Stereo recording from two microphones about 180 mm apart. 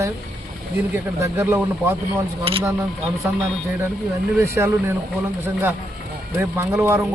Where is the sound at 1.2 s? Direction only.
15° right (ahead or behind).